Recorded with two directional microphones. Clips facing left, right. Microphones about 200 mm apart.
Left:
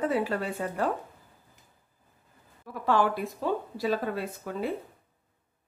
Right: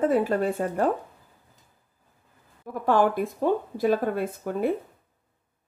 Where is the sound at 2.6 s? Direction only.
50° right (ahead or behind).